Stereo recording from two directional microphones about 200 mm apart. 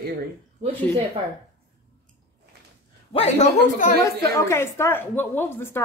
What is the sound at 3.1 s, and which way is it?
Speech, 30° left (ahead or behind).